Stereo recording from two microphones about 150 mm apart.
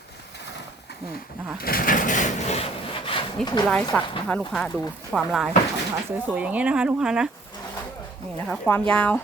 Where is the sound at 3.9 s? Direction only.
5° left (ahead or behind).